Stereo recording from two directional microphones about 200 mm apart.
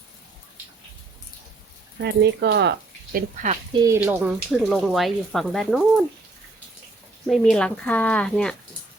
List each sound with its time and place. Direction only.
2.0 s speech: 55° right (ahead or behind); by 3.8 s 35° right (ahead or behind)
3.8 s speech: 15° right (ahead or behind); by 6.1 s centre (ahead or behind)
7.3 s speech: 5° left (ahead or behind)